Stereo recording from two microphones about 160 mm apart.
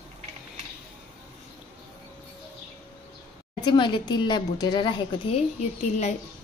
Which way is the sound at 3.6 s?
30° left (ahead or behind).